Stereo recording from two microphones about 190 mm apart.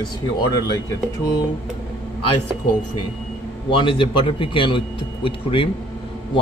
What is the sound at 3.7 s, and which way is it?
A man's voice, 25° left (ahead or behind).